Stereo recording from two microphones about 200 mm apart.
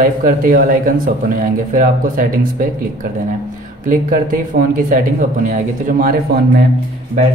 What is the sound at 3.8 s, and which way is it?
Speech, 40° right (ahead or behind).